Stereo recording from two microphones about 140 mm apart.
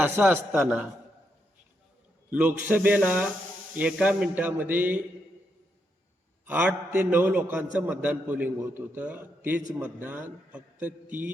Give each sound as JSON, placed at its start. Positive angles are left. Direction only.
{"t": 0.2, "sound": "a man's voice", "side_deg": -15}
{"t": 2.3, "sound": "a man's voice", "side_deg": -10}
{"t": 6.4, "sound": "a man's voice", "side_deg": -15}